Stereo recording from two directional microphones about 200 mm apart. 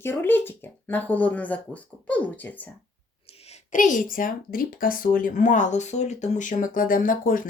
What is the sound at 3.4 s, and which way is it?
Speech, 40° left (ahead or behind).